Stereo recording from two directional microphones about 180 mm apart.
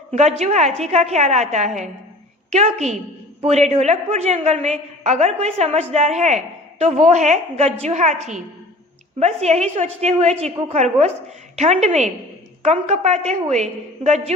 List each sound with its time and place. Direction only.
0.1 s a woman's voice: 40° right (ahead or behind)